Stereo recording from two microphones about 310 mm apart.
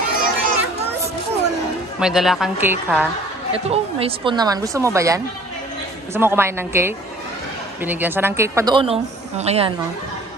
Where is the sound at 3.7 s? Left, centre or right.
Centre.